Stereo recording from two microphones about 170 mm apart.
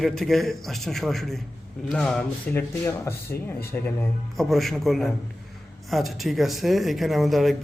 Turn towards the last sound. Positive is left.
turn(degrees=0)  # may be behind; listen again after turning